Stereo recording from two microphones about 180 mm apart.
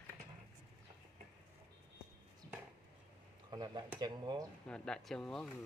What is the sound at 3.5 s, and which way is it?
Dishes, 20° right (ahead or behind).